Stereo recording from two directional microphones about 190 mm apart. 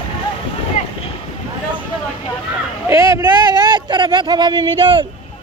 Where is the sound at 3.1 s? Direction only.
20° right (ahead or behind).